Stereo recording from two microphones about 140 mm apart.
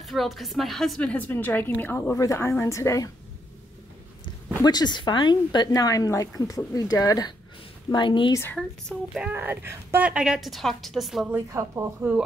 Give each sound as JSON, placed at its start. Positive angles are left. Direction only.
{"t": 0.0, "sound": "a woman's voice", "side_deg": 0}
{"t": 4.6, "sound": "a woman's voice", "side_deg": 30}
{"t": 8.4, "sound": "a woman's voice", "side_deg": 10}
{"t": 9.1, "sound": "a woman's voice", "side_deg": -10}
{"t": 11.2, "sound": "a woman's voice", "side_deg": -20}